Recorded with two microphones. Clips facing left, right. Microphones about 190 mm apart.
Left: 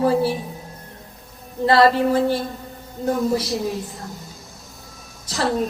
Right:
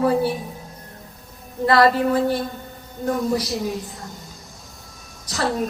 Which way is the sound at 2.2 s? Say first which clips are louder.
Left 1 dB; centre (ahead or behind).